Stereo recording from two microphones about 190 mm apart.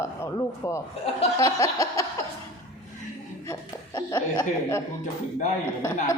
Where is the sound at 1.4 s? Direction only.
15° left (ahead or behind).